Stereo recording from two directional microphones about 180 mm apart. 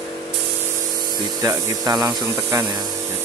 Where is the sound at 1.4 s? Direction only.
20° right (ahead or behind).